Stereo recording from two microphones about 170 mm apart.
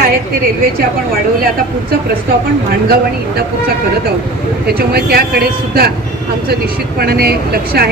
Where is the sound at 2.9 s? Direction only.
65° right (ahead or behind).